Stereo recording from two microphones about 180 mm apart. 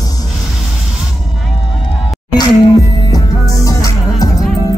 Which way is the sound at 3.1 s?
20° left (ahead or behind).